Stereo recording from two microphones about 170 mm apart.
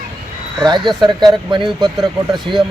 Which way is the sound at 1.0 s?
25° right (ahead or behind).